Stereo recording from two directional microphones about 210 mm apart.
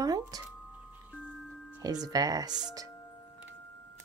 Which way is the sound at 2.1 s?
15° right (ahead or behind).